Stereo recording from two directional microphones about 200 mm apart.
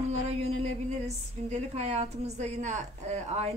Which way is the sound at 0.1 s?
35° right (ahead or behind).